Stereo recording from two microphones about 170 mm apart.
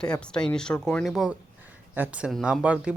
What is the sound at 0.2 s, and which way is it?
Speech, 5° left (ahead or behind).